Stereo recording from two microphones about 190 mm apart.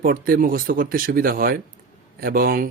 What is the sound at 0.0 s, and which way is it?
Speech, 50° right (ahead or behind).